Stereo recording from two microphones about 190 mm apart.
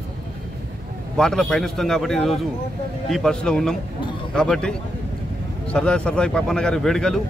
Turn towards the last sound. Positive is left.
turn(degrees=0)  # may be behind; listen again after turning